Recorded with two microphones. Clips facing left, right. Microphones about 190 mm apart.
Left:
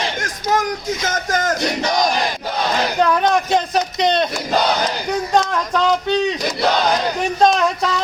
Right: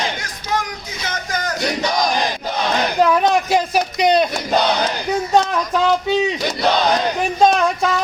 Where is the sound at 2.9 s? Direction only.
5° right (ahead or behind).